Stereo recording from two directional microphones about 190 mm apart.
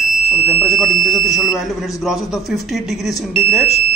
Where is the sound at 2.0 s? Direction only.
Centre (ahead or behind).